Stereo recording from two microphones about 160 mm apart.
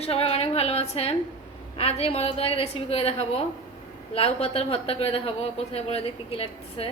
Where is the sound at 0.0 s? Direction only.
40° left (ahead or behind).